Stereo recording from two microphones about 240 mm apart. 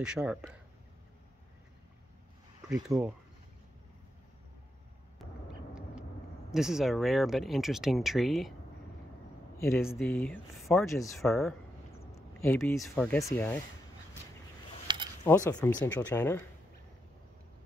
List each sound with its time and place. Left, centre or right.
0.0 s speech: centre
2.7 s speech: centre
5.2 s vehicle: centre
6.5 s speech: centre
9.6 s speech: centre
12.2 s speech: centre
14.9 s a sound: centre
15.2 s speech: centre